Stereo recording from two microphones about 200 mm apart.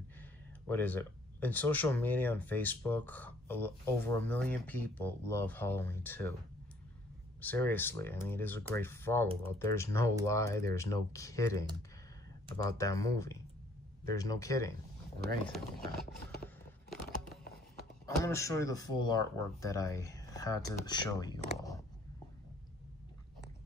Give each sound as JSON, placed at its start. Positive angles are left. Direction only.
{"t": 0.2, "sound": "speech", "side_deg": 10}
{"t": 7.3, "sound": "speech", "side_deg": 10}
{"t": 12.6, "sound": "speech", "side_deg": 15}
{"t": 15.5, "sound": "speech", "side_deg": 0}
{"t": 16.9, "sound": "a sound", "side_deg": 0}
{"t": 18.0, "sound": "speech", "side_deg": 15}